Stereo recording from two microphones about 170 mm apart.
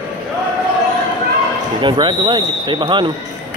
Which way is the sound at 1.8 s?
30° right (ahead or behind).